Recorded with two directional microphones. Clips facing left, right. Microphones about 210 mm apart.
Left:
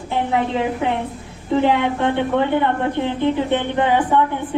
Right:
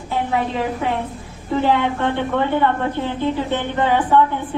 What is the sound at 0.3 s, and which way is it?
A woman's voice, 20° left (ahead or behind).